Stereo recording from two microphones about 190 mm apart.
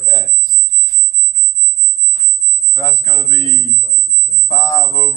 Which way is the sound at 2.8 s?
15° left (ahead or behind).